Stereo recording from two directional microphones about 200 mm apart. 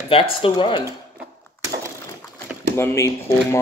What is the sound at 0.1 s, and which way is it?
Speech, 25° left (ahead or behind).